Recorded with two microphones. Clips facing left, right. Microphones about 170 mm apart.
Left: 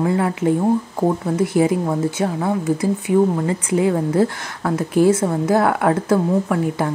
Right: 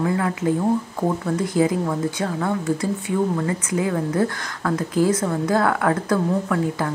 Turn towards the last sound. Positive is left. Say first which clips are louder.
# left 3 dB
turn(degrees=25)  # may be behind; listen again after turning